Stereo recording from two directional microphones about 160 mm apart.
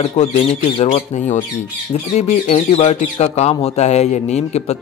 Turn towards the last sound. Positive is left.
turn(degrees=45)  # may be behind; listen again after turning